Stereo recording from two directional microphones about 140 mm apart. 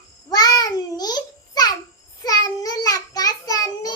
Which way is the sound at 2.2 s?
25° left (ahead or behind).